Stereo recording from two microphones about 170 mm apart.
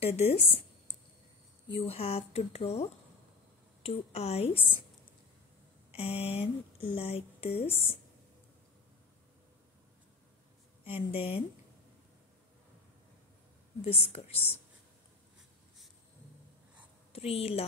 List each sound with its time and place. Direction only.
0.0 s speech: 40° left (ahead or behind)
5.9 s speech: 35° left (ahead or behind)
11.1 s speech: 35° left (ahead or behind)
13.8 s speech: 35° left (ahead or behind)
17.1 s speech: 35° left (ahead or behind)